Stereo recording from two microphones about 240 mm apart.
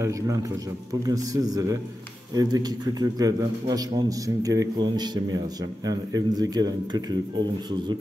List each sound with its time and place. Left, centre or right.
0.0 s a man's voice: centre